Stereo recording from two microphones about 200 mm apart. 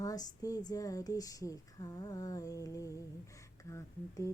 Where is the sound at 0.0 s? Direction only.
15° left (ahead or behind).